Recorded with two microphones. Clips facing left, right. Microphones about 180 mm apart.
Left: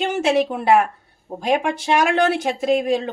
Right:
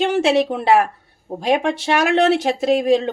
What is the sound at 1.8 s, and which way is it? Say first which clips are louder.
A woman's voice: right 1 dB; 25° right (ahead or behind).